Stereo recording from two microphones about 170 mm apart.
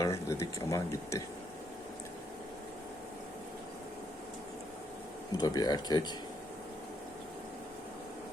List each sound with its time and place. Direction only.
0.0 s speech: 20° left (ahead or behind)
5.4 s speech: 25° left (ahead or behind)